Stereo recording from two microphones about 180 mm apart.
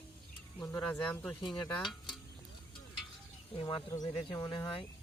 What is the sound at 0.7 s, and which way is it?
Speech, 15° left (ahead or behind).